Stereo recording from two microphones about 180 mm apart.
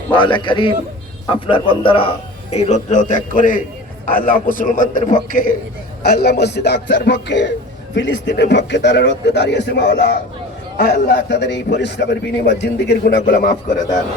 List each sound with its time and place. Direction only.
0.1 s a man's voice: 25° left (ahead or behind); by 5.5 s 45° left (ahead or behind)
6.0 s a man's voice: 65° left (ahead or behind)
7.9 s a man's voice: 85° left
10.8 s a man's voice: 60° left (ahead or behind)